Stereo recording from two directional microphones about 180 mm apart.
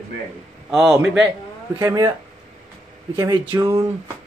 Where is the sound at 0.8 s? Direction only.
15° right (ahead or behind).